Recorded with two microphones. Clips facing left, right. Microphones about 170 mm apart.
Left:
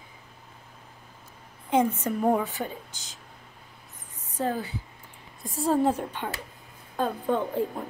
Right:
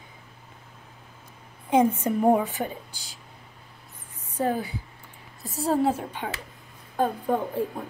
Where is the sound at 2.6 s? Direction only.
25° right (ahead or behind).